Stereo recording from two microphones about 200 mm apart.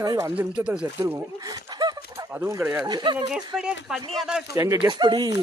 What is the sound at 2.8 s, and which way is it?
Speech, 20° right (ahead or behind).